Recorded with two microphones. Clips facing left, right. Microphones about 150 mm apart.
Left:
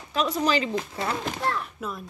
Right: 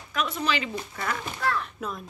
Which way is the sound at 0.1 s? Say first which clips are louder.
Left 4 dB; 35° left (ahead or behind).